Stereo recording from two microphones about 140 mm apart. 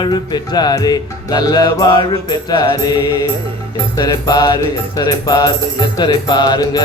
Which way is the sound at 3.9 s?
30° left (ahead or behind).